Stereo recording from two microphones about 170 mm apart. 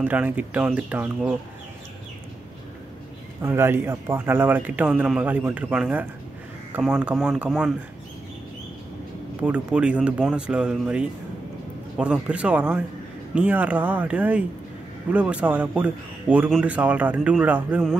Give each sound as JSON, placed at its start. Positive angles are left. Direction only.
{"t": 0.0, "sound": "a man's voice", "side_deg": -10}
{"t": 3.4, "sound": "a man's voice", "side_deg": -15}
{"t": 9.4, "sound": "a man's voice", "side_deg": -5}